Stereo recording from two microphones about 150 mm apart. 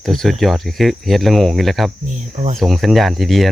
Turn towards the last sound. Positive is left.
turn(degrees=0)  # may be behind; listen again after turning